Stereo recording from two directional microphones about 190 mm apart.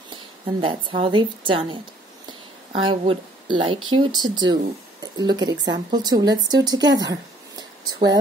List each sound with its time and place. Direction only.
0.1 s a woman's voice: 25° right (ahead or behind)
2.9 s speech: 25° right (ahead or behind)
7.0 s a sound: 20° right (ahead or behind)